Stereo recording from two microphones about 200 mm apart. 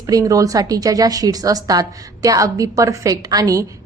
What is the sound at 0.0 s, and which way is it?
A woman's voice, 15° right (ahead or behind).